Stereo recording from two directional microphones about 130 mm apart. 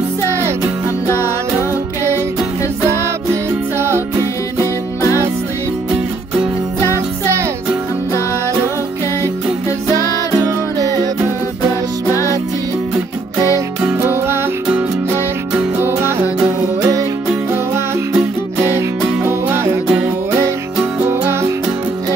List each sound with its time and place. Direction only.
1.1 s music: 20° right (ahead or behind)
3.7 s music: 20° right (ahead or behind)
6.9 s music: 20° right (ahead or behind)
13.8 s music: 15° right (ahead or behind)
17.3 s music: 15° right (ahead or behind)